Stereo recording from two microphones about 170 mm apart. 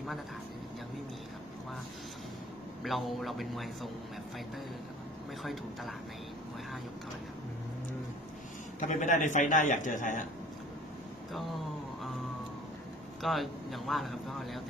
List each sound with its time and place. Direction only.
2.8 s speech: centre (ahead or behind)
5.4 s speech: centre (ahead or behind)
8.7 s a man's voice: 45° left (ahead or behind)
11.3 s a sound: centre (ahead or behind)
13.2 s speech: centre (ahead or behind)